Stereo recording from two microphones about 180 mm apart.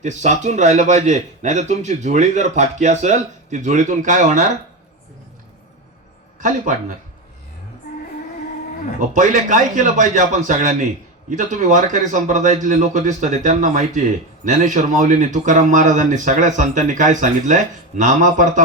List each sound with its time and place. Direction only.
0.0 s a man's voice: 40° right (ahead or behind)
9.0 s speech: 45° right (ahead or behind)